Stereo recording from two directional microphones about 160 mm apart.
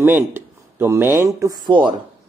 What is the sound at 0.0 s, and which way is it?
Speech, 15° right (ahead or behind).